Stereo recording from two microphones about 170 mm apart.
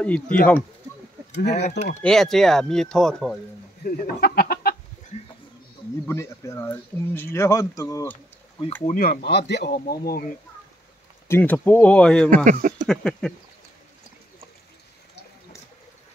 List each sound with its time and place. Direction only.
0.0 s speech: 5° left (ahead or behind)
1.5 s speech: 40° left (ahead or behind)
2.0 s speech: 5° left (ahead or behind)
3.8 s speech: 55° left (ahead or behind)
6.0 s speech: 15° left (ahead or behind)
8.8 s speech: 55° left (ahead or behind)
9.5 s speech: 80° left
10.0 s speech: 60° left (ahead or behind)
11.2 s speech: 15° left (ahead or behind)
12.4 s speech: 50° right (ahead or behind)
12.8 s speech: 5° left (ahead or behind)